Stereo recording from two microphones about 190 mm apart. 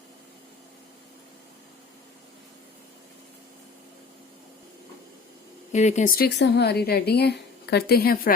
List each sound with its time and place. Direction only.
5.7 s speech: 40° left (ahead or behind)